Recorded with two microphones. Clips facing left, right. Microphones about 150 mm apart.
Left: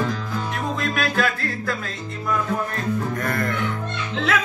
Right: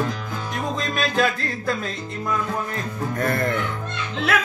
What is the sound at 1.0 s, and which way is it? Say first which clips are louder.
Music: right 3 dB; 20° right (ahead or behind).